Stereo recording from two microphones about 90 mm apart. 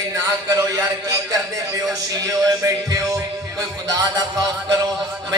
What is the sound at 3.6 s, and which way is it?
Music, 45° right (ahead or behind).